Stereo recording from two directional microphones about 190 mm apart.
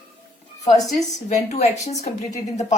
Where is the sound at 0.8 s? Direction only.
Centre (ahead or behind).